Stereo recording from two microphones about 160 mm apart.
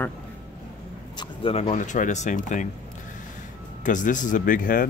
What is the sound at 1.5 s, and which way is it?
Speech, 45° left (ahead or behind).